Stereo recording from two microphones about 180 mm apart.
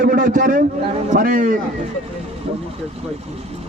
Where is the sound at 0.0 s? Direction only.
50° right (ahead or behind).